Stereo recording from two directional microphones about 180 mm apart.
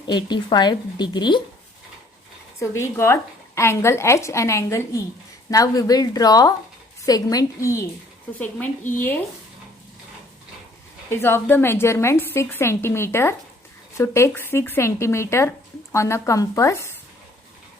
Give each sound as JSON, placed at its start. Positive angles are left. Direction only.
{"t": 0.1, "sound": "speech", "side_deg": 25}
{"t": 2.6, "sound": "a woman's voice", "side_deg": 15}
{"t": 11.1, "sound": "a woman's voice", "side_deg": 15}